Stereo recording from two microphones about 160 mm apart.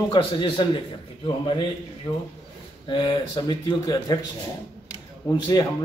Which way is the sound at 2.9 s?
30° left (ahead or behind).